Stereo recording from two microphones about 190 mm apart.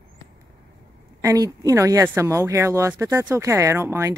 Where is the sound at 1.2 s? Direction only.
20° right (ahead or behind).